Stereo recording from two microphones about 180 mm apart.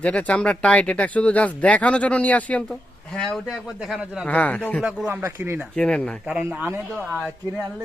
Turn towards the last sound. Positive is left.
turn(degrees=-10)  # may be behind; listen again after turning